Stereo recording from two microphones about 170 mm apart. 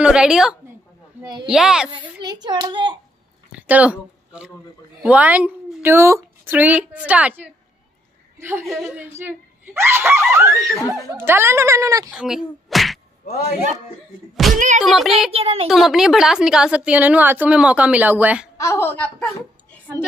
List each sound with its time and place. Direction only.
0.0 s a woman's voice: 5° right (ahead or behind)
1.2 s speech: 25° right (ahead or behind)
1.5 s a woman's voice: 5° right (ahead or behind)
2.2 s speech: 25° right (ahead or behind)
3.5 s a woman's voice: 10° right (ahead or behind)
8.6 s a woman's voice: centre (ahead or behind); by 12.1 s 20° right (ahead or behind)
12.1 s speech: 5° right (ahead or behind)
14.3 s a woman's voice: centre (ahead or behind)
15.3 s speech: 35° right (ahead or behind)
15.7 s a woman's voice: centre (ahead or behind)
18.6 s a woman's voice: 15° left (ahead or behind)